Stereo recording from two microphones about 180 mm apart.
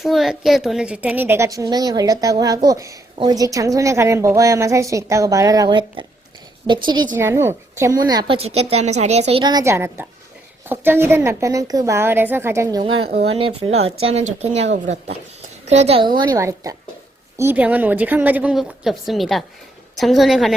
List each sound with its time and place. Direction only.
0.0 s a woman's voice: centre (ahead or behind); by 9.4 s 35° right (ahead or behind)
9.4 s a woman's voice: 20° right (ahead or behind)
13.2 s a woman's voice: 30° right (ahead or behind)
16.1 s a woman's voice: 20° right (ahead or behind); by 20.6 s centre (ahead or behind)